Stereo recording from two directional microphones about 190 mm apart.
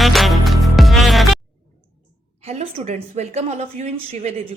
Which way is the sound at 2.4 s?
35° right (ahead or behind).